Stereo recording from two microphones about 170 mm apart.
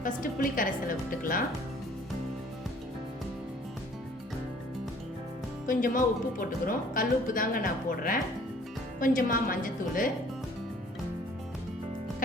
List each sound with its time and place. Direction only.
0.0 s a woman's voice: 55° left (ahead or behind)
5.6 s speech: 55° left (ahead or behind)